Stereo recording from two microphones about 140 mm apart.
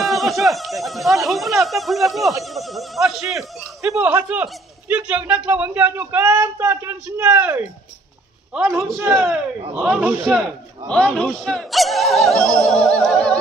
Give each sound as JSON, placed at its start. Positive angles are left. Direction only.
{"t": 0.0, "sound": "speech", "side_deg": 0}
{"t": 3.3, "sound": "speech", "side_deg": -20}
{"t": 8.5, "sound": "speech", "side_deg": -5}
{"t": 8.9, "sound": "speech", "side_deg": -20}
{"t": 9.8, "sound": "speech", "side_deg": -10}